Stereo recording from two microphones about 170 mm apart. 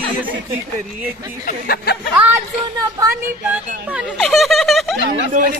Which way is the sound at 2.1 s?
10° right (ahead or behind).